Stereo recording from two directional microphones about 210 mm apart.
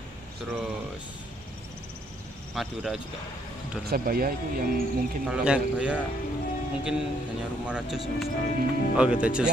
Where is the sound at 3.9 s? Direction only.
45° right (ahead or behind).